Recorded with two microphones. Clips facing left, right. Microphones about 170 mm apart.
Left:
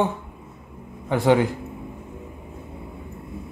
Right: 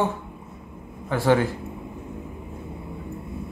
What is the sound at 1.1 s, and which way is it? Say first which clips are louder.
Speech: left 2 dB; 20° left (ahead or behind).